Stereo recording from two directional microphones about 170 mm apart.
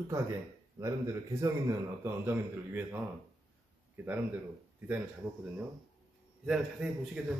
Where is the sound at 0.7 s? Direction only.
20° right (ahead or behind).